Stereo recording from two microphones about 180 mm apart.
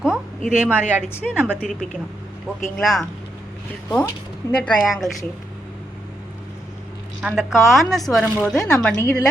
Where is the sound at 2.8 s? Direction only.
Centre (ahead or behind).